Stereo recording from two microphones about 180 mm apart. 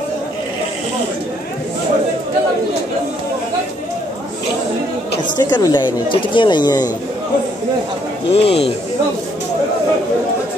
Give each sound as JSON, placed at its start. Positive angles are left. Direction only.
{"t": 5.4, "sound": "speech", "side_deg": 25}
{"t": 8.3, "sound": "speech", "side_deg": 35}